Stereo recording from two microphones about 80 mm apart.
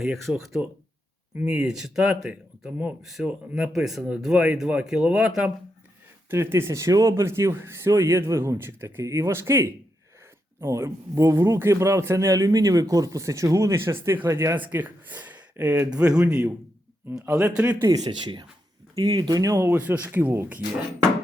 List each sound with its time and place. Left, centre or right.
0.1 s speech: centre
1.4 s speech: centre
3.0 s speech: centre
3.2 s speech: centre
3.7 s speech: centre
6.3 s a man's voice: right
15.9 s speech: centre
17.2 s speech: right
17.4 s speech: centre
17.8 s speech: right
19.5 s speech: right